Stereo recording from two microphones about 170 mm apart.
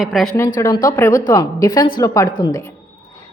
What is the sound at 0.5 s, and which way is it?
A woman's voice, 20° left (ahead or behind).